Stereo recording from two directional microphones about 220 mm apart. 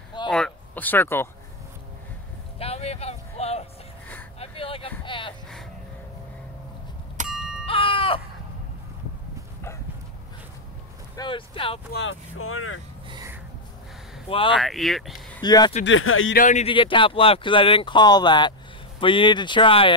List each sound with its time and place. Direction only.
0.3 s speech: 5° left (ahead or behind)
2.6 s a sound: 30° left (ahead or behind)
7.2 s a sound: centre (ahead or behind)
7.6 s a sound: 25° left (ahead or behind)
11.1 s speech: 20° left (ahead or behind)
11.9 s speech: 60° left (ahead or behind)
13.1 s music: 15° right (ahead or behind)
14.5 s speech: centre (ahead or behind)
15.4 s speech: 20° left (ahead or behind)
15.8 s speech: 65° left (ahead or behind)
16.3 s speech: 35° left (ahead or behind)